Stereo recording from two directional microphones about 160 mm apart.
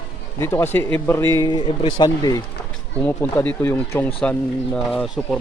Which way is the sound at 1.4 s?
30° left (ahead or behind).